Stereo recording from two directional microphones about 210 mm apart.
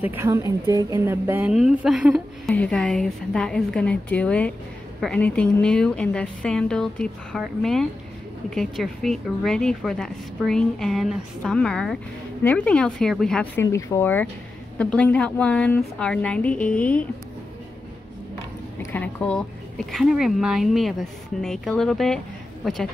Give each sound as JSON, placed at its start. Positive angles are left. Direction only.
{"t": 0.0, "sound": "a woman's voice", "side_deg": -10}
{"t": 18.8, "sound": "a woman's voice", "side_deg": 10}